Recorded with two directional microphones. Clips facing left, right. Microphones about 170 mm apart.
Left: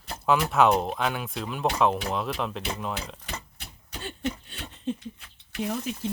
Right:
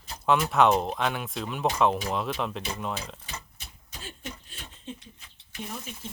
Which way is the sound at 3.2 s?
65° left (ahead or behind).